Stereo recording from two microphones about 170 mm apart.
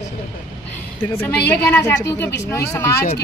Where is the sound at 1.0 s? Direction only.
10° left (ahead or behind).